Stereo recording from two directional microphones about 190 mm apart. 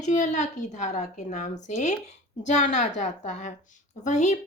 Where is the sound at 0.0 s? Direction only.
40° left (ahead or behind).